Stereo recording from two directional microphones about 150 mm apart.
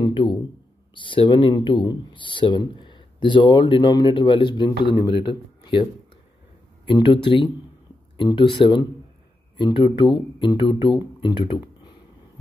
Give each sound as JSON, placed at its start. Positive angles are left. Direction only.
{"t": 0.0, "sound": "a sound", "side_deg": 30}
{"t": 0.9, "sound": "speech", "side_deg": 35}
{"t": 6.9, "sound": "speech", "side_deg": 35}